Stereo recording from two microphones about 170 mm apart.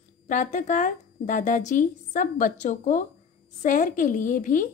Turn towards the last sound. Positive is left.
turn(degrees=50)  # may be behind; listen again after turning